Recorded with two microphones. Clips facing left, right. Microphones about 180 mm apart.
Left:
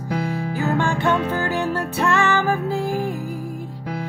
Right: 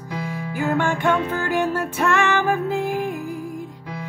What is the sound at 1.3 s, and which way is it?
Music, 40° left (ahead or behind).